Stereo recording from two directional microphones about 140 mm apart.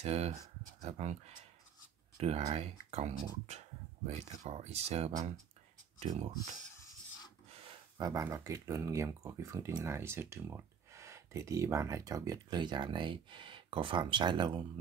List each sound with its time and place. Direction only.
0.0 s speech: 50° right (ahead or behind)
6.8 s a sound: 25° left (ahead or behind)
8.0 s speech: 25° right (ahead or behind)